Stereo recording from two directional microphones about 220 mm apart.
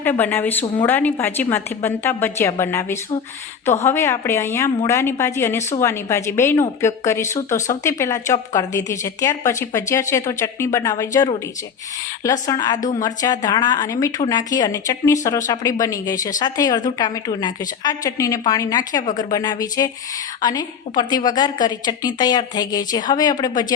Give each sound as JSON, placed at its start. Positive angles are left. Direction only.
{"t": 0.0, "sound": "speech", "side_deg": 10}